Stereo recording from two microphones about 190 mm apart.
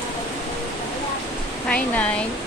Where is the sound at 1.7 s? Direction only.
5° left (ahead or behind).